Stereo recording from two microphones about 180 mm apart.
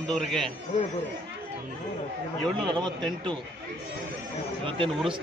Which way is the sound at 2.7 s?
25° right (ahead or behind).